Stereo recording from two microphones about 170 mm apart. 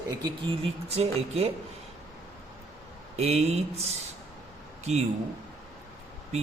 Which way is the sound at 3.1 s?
40° right (ahead or behind).